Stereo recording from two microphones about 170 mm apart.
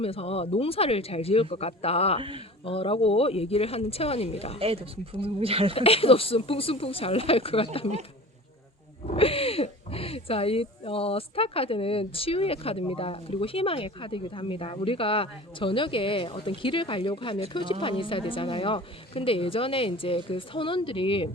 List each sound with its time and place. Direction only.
0.0 s speech: 35° left (ahead or behind)
4.6 s speech: 35° right (ahead or behind)
5.7 s speech: 35° left (ahead or behind)
9.0 s speech: 35° left (ahead or behind)